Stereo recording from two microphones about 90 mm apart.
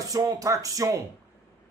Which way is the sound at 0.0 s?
40° right (ahead or behind).